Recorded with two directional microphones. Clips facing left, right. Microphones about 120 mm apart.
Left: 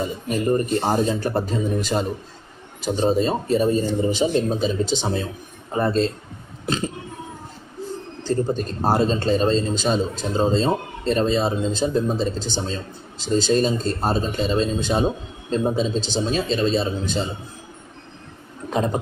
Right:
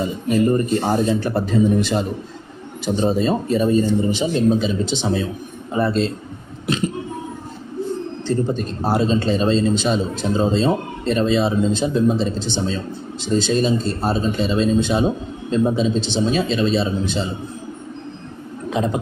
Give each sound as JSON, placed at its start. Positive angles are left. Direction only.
{"t": 1.2, "sound": "speech", "side_deg": 45}
{"t": 6.7, "sound": "a sound", "side_deg": 35}
{"t": 8.3, "sound": "speech", "side_deg": 40}
{"t": 18.7, "sound": "speech", "side_deg": 40}